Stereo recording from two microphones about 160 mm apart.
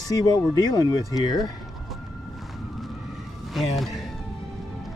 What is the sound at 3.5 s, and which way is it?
Speech, centre (ahead or behind).